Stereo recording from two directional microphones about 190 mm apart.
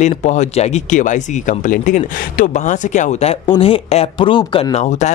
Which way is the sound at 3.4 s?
25° left (ahead or behind).